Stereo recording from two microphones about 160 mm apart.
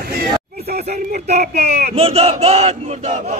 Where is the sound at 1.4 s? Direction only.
90° right.